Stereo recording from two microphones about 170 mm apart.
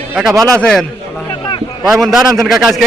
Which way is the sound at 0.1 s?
5° right (ahead or behind).